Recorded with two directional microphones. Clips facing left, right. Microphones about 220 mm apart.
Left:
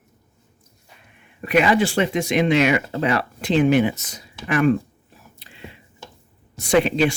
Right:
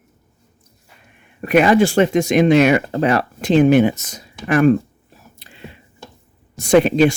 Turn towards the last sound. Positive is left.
turn(degrees=-45)  # may be behind; listen again after turning